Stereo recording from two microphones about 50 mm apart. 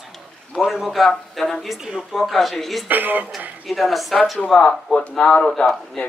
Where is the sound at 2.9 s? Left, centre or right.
Right.